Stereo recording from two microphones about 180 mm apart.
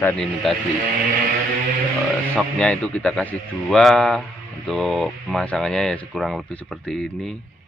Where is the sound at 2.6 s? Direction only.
5° left (ahead or behind).